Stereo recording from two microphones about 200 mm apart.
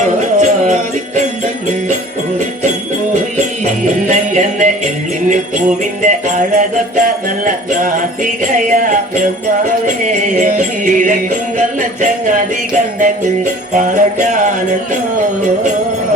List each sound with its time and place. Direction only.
0.4 s jingle bell: 35° right (ahead or behind)
3.6 s jingle bell: 35° right (ahead or behind)